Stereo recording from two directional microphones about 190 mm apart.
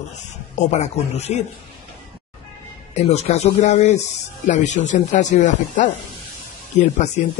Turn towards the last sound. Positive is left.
turn(degrees=40)  # may be behind; listen again after turning